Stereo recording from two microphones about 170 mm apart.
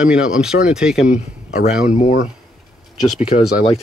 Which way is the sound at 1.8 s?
45° left (ahead or behind).